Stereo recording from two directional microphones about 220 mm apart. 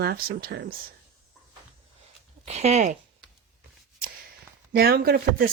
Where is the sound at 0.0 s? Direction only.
45° right (ahead or behind).